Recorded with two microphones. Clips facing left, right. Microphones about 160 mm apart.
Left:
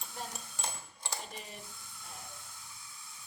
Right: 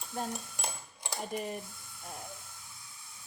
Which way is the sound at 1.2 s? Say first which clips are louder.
Right 11 dB; 55° right (ahead or behind).